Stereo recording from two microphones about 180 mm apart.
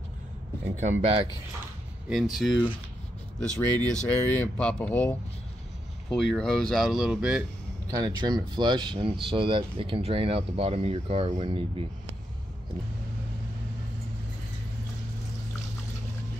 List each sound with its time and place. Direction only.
0.7 s speech: 35° right (ahead or behind)
2.0 s speech: centre (ahead or behind)
7.9 s speech: 20° right (ahead or behind); by 11.6 s 35° right (ahead or behind)